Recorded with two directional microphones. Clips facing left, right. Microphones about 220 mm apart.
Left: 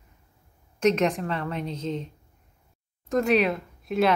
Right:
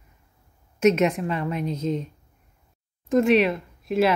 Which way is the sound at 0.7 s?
5° right (ahead or behind).